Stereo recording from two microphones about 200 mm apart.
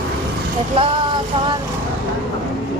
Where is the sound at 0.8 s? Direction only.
30° right (ahead or behind).